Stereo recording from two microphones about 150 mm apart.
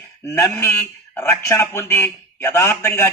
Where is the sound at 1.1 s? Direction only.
15° left (ahead or behind).